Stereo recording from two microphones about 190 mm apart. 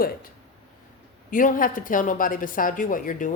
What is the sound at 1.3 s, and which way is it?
A woman's voice, 45° left (ahead or behind).